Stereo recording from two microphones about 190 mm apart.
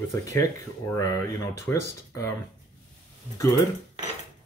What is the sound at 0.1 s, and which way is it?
Speech, 15° left (ahead or behind).